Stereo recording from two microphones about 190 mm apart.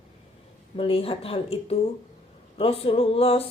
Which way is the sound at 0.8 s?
30° left (ahead or behind).